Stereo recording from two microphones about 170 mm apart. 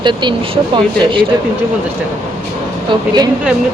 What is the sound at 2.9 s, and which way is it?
Speech, 25° right (ahead or behind).